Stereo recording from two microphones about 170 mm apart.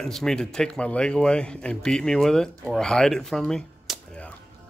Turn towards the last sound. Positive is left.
turn(degrees=5)  # may be behind; listen again after turning